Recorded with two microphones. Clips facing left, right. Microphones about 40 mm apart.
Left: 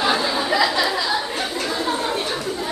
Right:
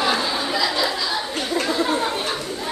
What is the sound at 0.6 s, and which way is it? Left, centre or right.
Speech, left.